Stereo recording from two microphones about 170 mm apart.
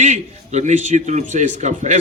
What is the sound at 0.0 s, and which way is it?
A man's voice, 45° right (ahead or behind).